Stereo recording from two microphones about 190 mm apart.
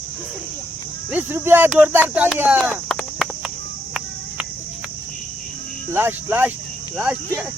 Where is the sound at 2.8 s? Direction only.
Centre (ahead or behind).